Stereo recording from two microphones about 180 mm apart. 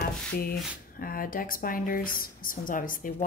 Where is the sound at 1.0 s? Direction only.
50° left (ahead or behind).